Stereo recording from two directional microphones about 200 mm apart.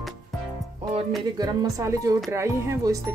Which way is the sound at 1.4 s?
20° right (ahead or behind).